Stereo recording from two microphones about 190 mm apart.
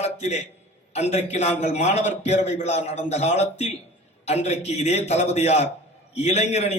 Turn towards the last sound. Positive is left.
turn(degrees=35)  # may be behind; listen again after turning